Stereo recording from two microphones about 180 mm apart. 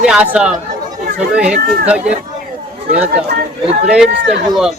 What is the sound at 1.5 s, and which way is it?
Speech, 45° right (ahead or behind).